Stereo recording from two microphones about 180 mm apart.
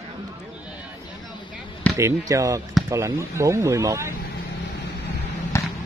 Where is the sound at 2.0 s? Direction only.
15° right (ahead or behind).